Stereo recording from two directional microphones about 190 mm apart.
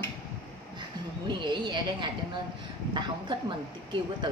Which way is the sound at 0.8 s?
25° right (ahead or behind).